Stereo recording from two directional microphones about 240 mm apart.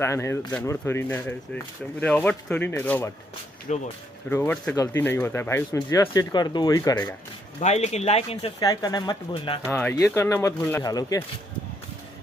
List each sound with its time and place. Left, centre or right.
0.0 s speech: centre
3.7 s speech: left
4.3 s speech: centre
7.6 s speech: left
9.7 s speech: centre